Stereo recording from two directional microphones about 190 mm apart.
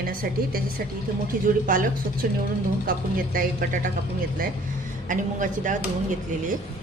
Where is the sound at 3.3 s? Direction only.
45° right (ahead or behind).